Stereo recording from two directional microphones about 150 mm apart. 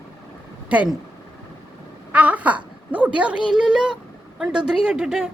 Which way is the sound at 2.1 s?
10° right (ahead or behind).